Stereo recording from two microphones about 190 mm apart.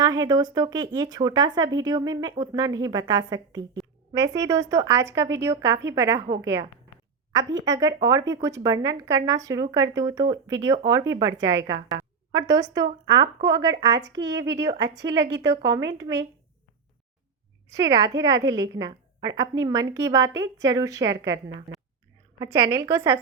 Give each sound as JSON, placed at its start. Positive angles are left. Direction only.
{"t": 0.0, "sound": "a woman's voice", "side_deg": -20}
{"t": 17.7, "sound": "a woman's voice", "side_deg": -15}
{"t": 22.8, "sound": "a woman's voice", "side_deg": -15}